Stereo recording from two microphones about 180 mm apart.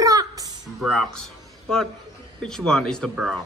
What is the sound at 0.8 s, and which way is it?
Speech, centre (ahead or behind).